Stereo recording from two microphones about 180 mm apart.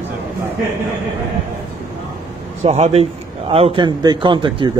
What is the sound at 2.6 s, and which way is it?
A man's voice, 35° right (ahead or behind).